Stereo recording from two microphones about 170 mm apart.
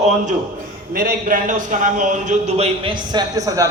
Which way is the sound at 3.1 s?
25° right (ahead or behind).